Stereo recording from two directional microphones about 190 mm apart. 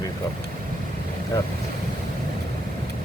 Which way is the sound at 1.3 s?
15° left (ahead or behind).